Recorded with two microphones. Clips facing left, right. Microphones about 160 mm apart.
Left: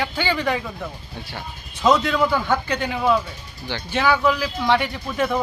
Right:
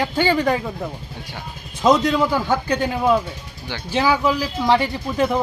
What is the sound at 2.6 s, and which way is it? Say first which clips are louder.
Speech: right 2 dB; 35° right (ahead or behind).